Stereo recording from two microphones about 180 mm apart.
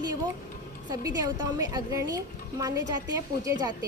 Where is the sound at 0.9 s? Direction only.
20° right (ahead or behind).